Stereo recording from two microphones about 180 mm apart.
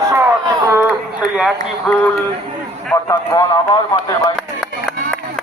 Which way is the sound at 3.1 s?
20° left (ahead or behind).